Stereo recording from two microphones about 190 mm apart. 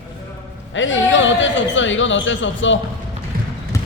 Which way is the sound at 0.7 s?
80° left.